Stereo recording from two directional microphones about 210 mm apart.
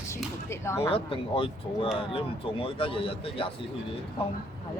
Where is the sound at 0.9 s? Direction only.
25° left (ahead or behind).